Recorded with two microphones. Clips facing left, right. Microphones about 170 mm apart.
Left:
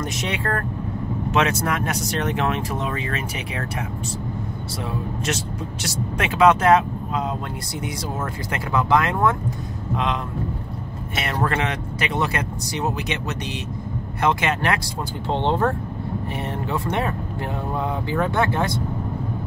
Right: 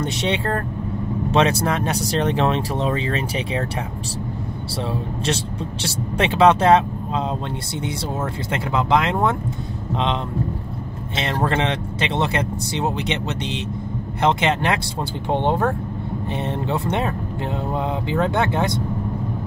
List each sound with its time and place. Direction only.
0.0 s speech: 30° right (ahead or behind)
5.2 s speech: 30° right (ahead or behind)
8.5 s speech: 20° right (ahead or behind)
11.1 s speech: 25° right (ahead or behind)
15.2 s speech: 15° right (ahead or behind)
16.3 s speech: 25° right (ahead or behind)